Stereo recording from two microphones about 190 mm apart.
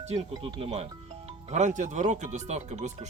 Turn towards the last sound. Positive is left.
turn(degrees=-35)  # may be behind; listen again after turning